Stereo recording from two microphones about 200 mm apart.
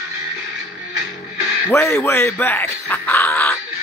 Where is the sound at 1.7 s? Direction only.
15° left (ahead or behind).